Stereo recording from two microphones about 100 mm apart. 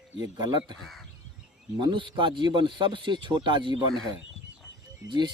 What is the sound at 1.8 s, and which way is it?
A man's voice, 55° right (ahead or behind).